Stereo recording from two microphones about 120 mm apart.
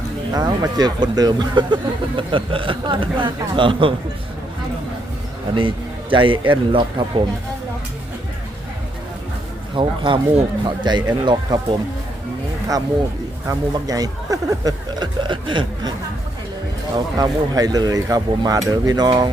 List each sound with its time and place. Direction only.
0.3 s speech: 35° right (ahead or behind)
5.5 s a man's voice: 45° right (ahead or behind)
9.7 s speech: 45° right (ahead or behind)
13.5 s speech: 30° right (ahead or behind)
17.2 s speech: 30° right (ahead or behind)